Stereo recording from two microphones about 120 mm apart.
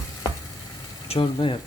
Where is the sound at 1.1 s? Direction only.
45° left (ahead or behind).